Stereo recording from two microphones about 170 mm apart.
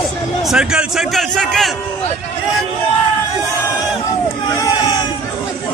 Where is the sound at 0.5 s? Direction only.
5° right (ahead or behind).